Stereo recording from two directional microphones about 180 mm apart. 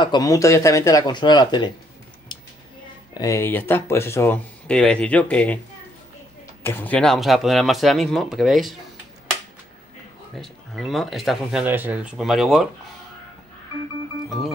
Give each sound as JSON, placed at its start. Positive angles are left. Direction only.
{"t": 0.0, "sound": "speech", "side_deg": 20}
{"t": 3.2, "sound": "speech", "side_deg": 15}
{"t": 6.6, "sound": "speech", "side_deg": 10}
{"t": 10.3, "sound": "speech", "side_deg": 0}